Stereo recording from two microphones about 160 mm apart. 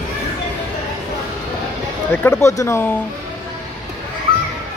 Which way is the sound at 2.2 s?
20° left (ahead or behind).